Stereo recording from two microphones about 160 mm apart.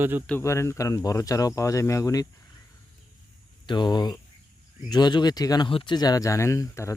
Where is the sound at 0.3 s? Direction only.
15° left (ahead or behind).